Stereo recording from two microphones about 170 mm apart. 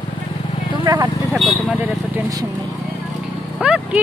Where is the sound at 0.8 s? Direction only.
20° right (ahead or behind).